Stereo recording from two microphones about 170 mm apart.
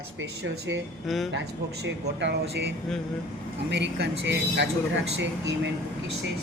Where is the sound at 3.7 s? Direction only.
90° right.